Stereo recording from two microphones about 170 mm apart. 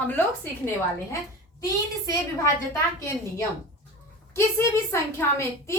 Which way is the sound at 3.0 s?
20° left (ahead or behind).